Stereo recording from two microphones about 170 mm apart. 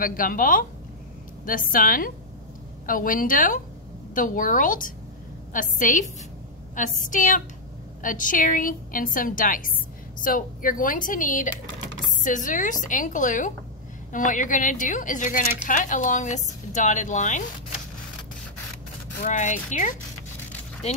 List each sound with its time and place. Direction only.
0.0 s a woman's voice: 55° left (ahead or behind)
19.2 s a woman's voice: 45° left (ahead or behind)